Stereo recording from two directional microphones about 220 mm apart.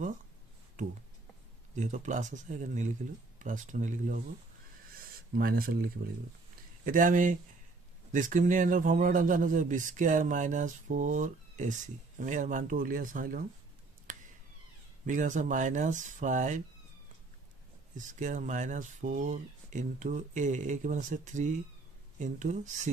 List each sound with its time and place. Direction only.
1.8 s a man's voice: 35° right (ahead or behind)
5.3 s a man's voice: 40° right (ahead or behind)
15.0 s a man's voice: 35° right (ahead or behind)
17.9 s a man's voice: 35° right (ahead or behind)